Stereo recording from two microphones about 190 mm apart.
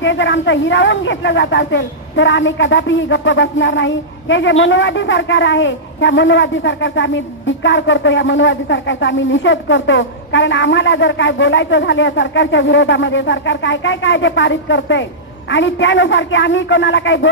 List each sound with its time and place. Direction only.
0.0 s speech: 75° left (ahead or behind)